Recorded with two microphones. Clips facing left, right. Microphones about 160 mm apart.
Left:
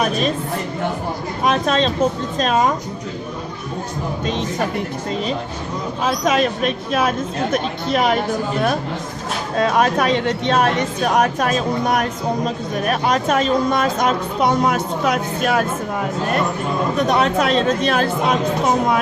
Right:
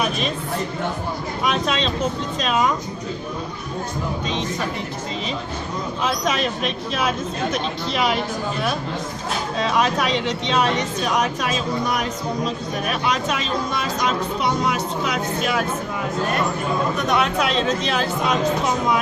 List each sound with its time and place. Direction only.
1.5 s a woman's voice: 45° left (ahead or behind)
6.2 s speech: 45° left (ahead or behind)
9.6 s speech: 50° left (ahead or behind)
17.1 s speech: 40° left (ahead or behind)